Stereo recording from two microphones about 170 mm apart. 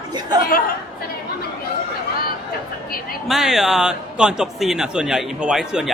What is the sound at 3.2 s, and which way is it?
Speech, centre (ahead or behind).